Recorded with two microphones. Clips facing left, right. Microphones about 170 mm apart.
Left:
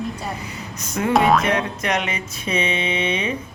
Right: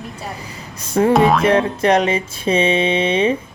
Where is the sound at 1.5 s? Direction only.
30° right (ahead or behind).